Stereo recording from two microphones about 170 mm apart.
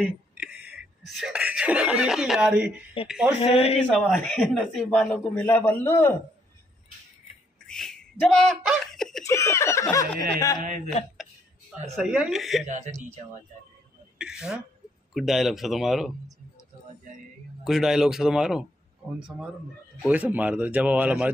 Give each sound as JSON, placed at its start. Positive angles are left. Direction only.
{"t": 0.0, "sound": "a sound", "side_deg": -5}
{"t": 1.1, "sound": "speech", "side_deg": -5}
{"t": 3.3, "sound": "speech", "side_deg": 35}
{"t": 3.9, "sound": "a man's voice", "side_deg": 5}
{"t": 7.6, "sound": "a sound", "side_deg": 5}
{"t": 9.2, "sound": "a man's voice", "side_deg": 15}
{"t": 11.9, "sound": "speech", "side_deg": 0}
{"t": 12.6, "sound": "speech", "side_deg": -45}
{"t": 14.1, "sound": "speech", "side_deg": -5}
{"t": 17.6, "sound": "a man's voice", "side_deg": 0}